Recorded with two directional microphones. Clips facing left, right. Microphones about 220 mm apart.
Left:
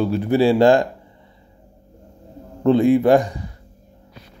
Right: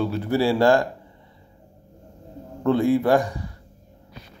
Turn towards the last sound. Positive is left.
turn(degrees=20)  # may be behind; listen again after turning